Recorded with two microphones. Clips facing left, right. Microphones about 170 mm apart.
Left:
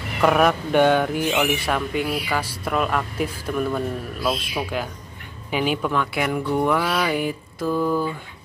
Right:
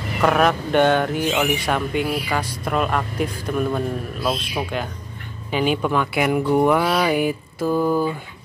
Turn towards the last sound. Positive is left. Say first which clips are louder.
# right 3 dB
turn(degrees=-30)  # may be behind; listen again after turning